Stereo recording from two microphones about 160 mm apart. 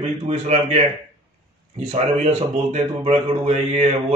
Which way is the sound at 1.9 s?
45° right (ahead or behind).